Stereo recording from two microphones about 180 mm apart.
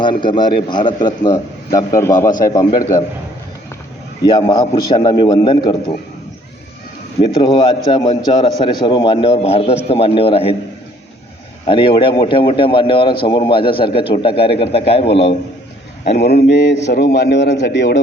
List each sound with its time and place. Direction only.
0.0 s a man's voice: 25° left (ahead or behind)
4.3 s a man's voice: 25° left (ahead or behind)
7.3 s a man's voice: 25° left (ahead or behind)
11.6 s a man's voice: 30° left (ahead or behind)
16.1 s speech: 65° left (ahead or behind)
17.1 s a man's voice: 80° left